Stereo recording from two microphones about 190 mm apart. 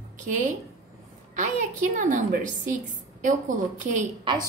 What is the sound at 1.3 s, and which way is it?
A woman's voice, 40° right (ahead or behind).